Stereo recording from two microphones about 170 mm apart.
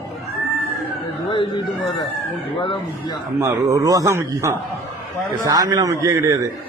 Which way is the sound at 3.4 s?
20° right (ahead or behind).